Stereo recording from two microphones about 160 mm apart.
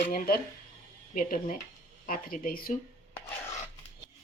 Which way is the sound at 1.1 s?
60° left (ahead or behind).